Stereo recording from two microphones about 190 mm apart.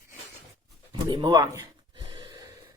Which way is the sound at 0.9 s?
25° right (ahead or behind).